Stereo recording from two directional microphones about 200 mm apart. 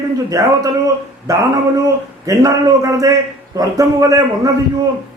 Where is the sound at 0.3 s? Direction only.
15° right (ahead or behind).